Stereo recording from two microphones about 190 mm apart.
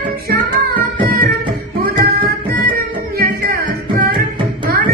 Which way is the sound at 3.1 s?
50° right (ahead or behind).